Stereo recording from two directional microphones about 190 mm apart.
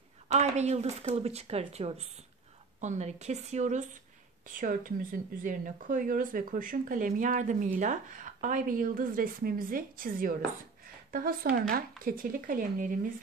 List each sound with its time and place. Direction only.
0.3 s speech: 35° right (ahead or behind)